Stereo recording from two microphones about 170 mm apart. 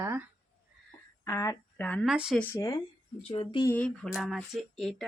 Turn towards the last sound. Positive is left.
turn(degrees=0)  # may be behind; listen again after turning